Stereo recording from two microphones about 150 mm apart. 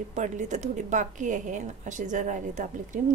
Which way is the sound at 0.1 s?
55° right (ahead or behind).